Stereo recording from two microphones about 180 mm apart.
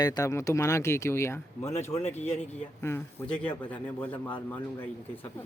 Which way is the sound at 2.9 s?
15° left (ahead or behind).